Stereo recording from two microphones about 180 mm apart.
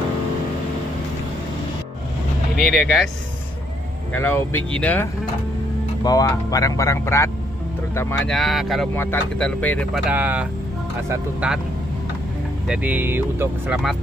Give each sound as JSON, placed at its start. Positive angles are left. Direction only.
{"t": 2.7, "sound": "speech", "side_deg": 0}
{"t": 4.1, "sound": "speech", "side_deg": 10}
{"t": 6.0, "sound": "speech", "side_deg": 20}
{"t": 8.3, "sound": "speech", "side_deg": 0}
{"t": 8.9, "sound": "speech", "side_deg": 10}
{"t": 10.0, "sound": "speech", "side_deg": -10}
{"t": 12.6, "sound": "speech", "side_deg": -5}